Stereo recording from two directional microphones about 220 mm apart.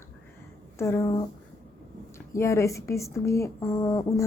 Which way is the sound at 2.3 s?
15° left (ahead or behind).